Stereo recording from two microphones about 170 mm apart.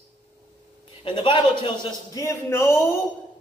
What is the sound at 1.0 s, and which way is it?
A man's voice, 30° left (ahead or behind).